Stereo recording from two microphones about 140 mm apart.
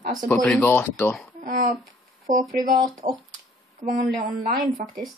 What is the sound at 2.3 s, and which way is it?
Speech, 70° right (ahead or behind).